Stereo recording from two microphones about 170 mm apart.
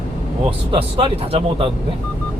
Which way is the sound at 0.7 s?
35° right (ahead or behind).